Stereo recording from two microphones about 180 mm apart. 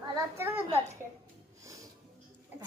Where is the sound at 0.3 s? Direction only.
10° right (ahead or behind).